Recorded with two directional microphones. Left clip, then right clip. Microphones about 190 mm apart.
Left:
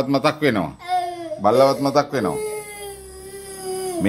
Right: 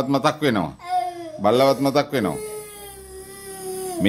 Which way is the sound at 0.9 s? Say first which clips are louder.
Left 1 dB; 10° left (ahead or behind).